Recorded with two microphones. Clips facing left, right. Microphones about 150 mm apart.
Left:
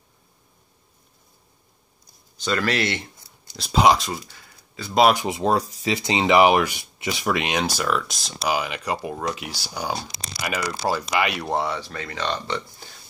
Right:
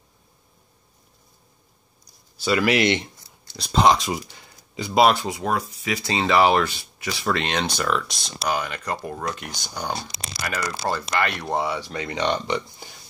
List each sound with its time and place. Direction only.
2.3 s speech: 10° right (ahead or behind)
3.5 s speech: 5° left (ahead or behind)
4.3 s a sound: 20° right (ahead or behind)
5.1 s speech: 20° left (ahead or behind)
5.9 s speech: 20° left (ahead or behind); by 11.8 s centre (ahead or behind)
11.8 s speech: 15° right (ahead or behind)